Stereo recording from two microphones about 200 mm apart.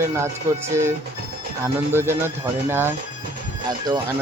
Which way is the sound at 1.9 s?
10° right (ahead or behind).